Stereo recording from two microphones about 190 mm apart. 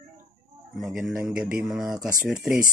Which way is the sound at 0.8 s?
Centre (ahead or behind).